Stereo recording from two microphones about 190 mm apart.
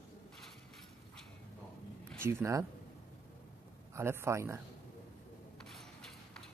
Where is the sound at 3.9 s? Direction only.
15° right (ahead or behind).